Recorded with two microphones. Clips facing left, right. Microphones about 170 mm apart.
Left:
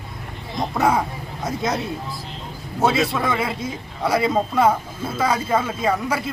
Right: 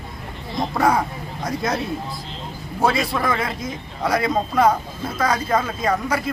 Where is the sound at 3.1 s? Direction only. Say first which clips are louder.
Even; 5° left (ahead or behind).